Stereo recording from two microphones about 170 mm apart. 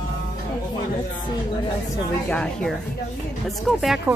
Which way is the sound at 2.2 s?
5° left (ahead or behind).